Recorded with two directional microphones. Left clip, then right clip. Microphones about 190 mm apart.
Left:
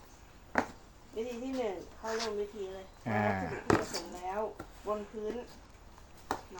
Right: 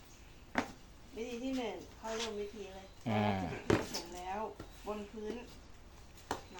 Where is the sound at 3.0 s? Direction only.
10° right (ahead or behind).